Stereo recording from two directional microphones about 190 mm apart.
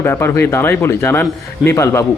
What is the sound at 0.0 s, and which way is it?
Speech, 15° left (ahead or behind).